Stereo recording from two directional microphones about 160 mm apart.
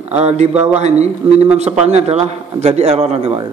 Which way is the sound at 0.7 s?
45° right (ahead or behind).